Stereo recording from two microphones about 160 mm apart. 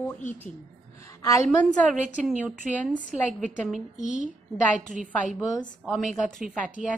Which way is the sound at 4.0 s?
50° left (ahead or behind).